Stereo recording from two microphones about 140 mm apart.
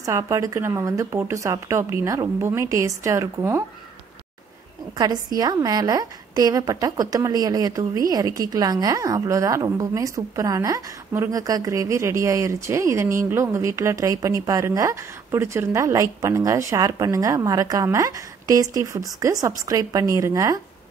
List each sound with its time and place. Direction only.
0.0 s a woman's voice: 20° right (ahead or behind)
4.9 s a woman's voice: 25° right (ahead or behind)